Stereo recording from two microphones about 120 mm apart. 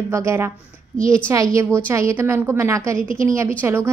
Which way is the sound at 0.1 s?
25° right (ahead or behind).